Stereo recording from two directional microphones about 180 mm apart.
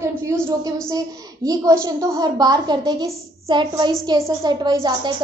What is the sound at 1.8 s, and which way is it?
A child's voice, 20° right (ahead or behind).